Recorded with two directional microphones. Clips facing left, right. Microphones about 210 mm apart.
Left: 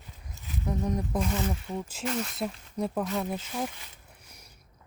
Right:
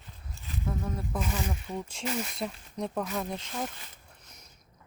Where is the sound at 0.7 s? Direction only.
20° left (ahead or behind).